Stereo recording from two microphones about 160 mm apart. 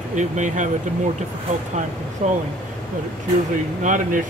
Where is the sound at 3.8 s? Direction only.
50° right (ahead or behind).